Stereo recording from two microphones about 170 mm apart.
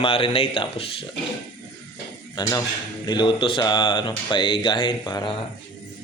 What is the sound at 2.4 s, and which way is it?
Speech, 20° left (ahead or behind).